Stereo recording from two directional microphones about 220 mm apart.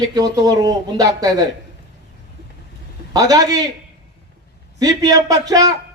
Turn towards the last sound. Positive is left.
turn(degrees=-15)  # may be behind; listen again after turning